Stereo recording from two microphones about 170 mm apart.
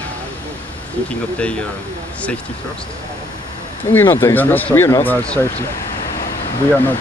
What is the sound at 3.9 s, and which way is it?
Speech, 15° left (ahead or behind).